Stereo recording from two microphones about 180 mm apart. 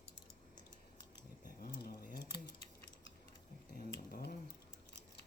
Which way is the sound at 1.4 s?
50° left (ahead or behind).